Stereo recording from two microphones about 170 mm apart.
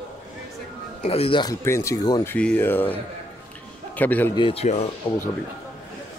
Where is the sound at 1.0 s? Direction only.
35° left (ahead or behind).